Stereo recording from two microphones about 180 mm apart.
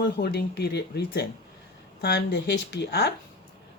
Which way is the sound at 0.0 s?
65° left (ahead or behind).